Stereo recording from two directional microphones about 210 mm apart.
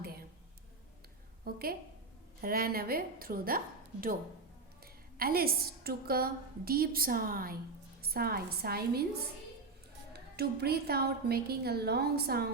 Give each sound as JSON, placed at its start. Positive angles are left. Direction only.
{"t": 0.0, "sound": "a sound", "side_deg": -45}
{"t": 1.5, "sound": "a woman's voice", "side_deg": -45}
{"t": 5.1, "sound": "a woman's voice", "side_deg": -45}
{"t": 10.1, "sound": "a woman's voice", "side_deg": -50}